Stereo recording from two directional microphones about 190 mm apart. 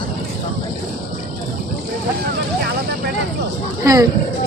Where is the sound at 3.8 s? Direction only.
20° right (ahead or behind).